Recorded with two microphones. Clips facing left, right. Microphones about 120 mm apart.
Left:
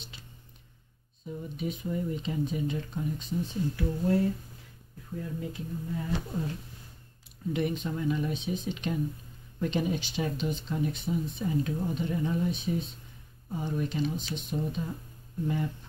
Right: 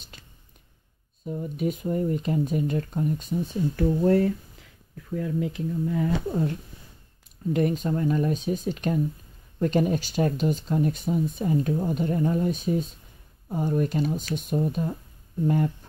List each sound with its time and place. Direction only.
0.1 s music: 45° right (ahead or behind)
1.2 s speech: 50° right (ahead or behind)
5.1 s speech: 90° right
7.5 s speech: 40° right (ahead or behind)